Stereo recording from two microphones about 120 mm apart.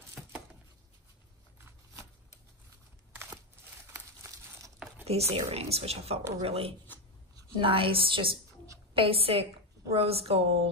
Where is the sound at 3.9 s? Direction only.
25° right (ahead or behind).